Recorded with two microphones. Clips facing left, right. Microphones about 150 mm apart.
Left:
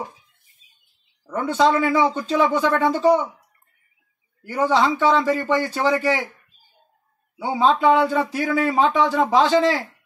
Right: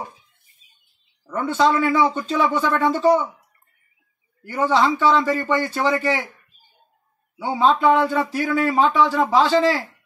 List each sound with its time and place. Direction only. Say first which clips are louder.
1.2 s speech: even; 15° left (ahead or behind)
4.4 s speech: even; 10° left (ahead or behind)
7.4 s speech: even; 10° left (ahead or behind)